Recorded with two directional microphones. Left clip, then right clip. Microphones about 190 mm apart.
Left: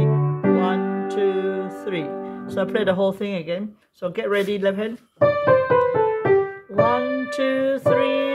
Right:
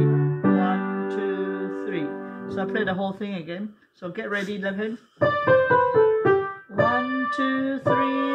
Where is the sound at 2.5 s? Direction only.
45° left (ahead or behind).